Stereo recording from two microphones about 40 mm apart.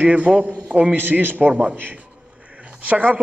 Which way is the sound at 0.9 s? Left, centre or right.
Right.